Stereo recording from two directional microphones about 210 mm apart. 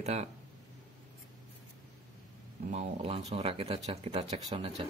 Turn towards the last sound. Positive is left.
turn(degrees=-25)  # may be behind; listen again after turning